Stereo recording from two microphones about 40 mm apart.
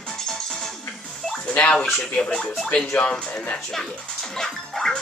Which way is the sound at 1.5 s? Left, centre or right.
Left.